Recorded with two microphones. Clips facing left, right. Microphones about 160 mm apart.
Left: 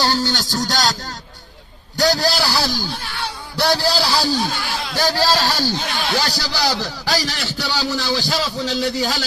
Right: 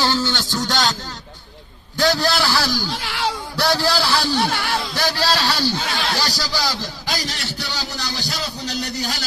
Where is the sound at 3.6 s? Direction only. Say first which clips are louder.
Left 1 dB; 30° left (ahead or behind).